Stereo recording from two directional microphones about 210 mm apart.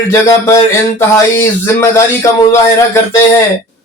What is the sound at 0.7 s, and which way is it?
Speech, 10° left (ahead or behind).